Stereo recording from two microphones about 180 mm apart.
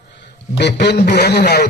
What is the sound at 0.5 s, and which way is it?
A man's voice, 70° left (ahead or behind).